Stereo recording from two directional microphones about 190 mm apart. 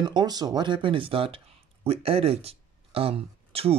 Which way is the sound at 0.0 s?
20° right (ahead or behind).